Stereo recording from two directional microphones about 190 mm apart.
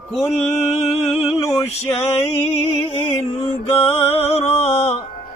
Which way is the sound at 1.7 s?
30° left (ahead or behind).